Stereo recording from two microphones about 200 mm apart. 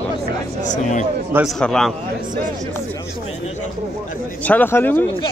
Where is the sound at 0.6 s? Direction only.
40° left (ahead or behind).